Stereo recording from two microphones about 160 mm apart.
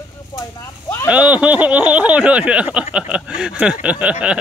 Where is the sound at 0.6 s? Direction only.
15° left (ahead or behind).